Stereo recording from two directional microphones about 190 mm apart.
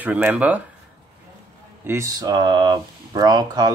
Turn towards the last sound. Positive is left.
turn(degrees=-20)  # may be behind; listen again after turning